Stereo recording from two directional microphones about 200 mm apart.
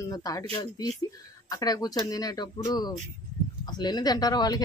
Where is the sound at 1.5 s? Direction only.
20° left (ahead or behind).